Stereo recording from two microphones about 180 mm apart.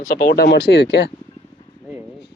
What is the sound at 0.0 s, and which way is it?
Speech, 55° left (ahead or behind).